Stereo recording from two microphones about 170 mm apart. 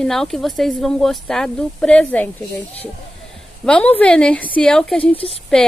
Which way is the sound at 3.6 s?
10° left (ahead or behind).